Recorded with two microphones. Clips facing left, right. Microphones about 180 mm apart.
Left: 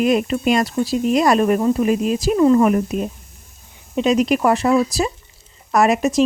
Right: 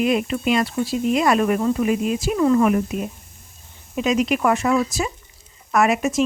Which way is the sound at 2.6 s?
40° left (ahead or behind).